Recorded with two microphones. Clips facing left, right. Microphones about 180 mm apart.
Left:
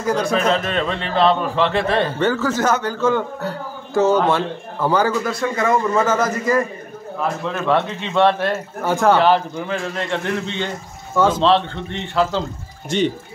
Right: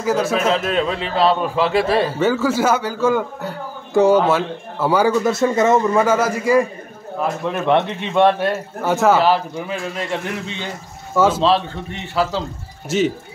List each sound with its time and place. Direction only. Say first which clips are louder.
0.0 s a man's voice: right 1 dB; 5° right (ahead or behind)
5.2 s speech: right 5 dB; 25° right (ahead or behind)
5.9 s a man's voice: right 2 dB; 10° right (ahead or behind)